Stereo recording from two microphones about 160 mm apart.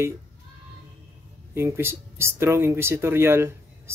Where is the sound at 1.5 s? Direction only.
15° right (ahead or behind).